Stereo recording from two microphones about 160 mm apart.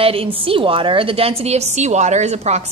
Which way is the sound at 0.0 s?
35° right (ahead or behind).